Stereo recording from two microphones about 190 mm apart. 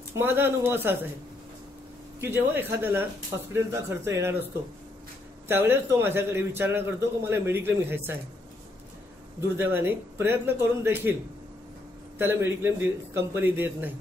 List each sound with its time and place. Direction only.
0.1 s a man's voice: 10° right (ahead or behind)
2.1 s a man's voice: 10° right (ahead or behind)
5.5 s a man's voice: 10° right (ahead or behind)
9.6 s a man's voice: 10° right (ahead or behind)
12.2 s a man's voice: 10° right (ahead or behind)